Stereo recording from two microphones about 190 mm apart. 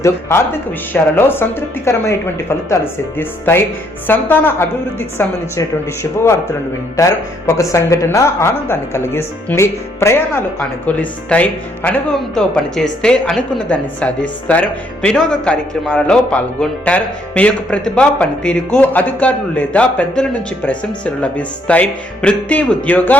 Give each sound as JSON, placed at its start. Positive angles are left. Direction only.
{"t": 0.0, "sound": "a man's voice", "side_deg": 15}